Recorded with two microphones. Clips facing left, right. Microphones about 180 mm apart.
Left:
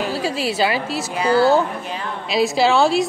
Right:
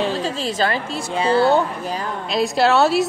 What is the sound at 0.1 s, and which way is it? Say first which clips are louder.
A woman's voice: left 1 dB; 10° left (ahead or behind).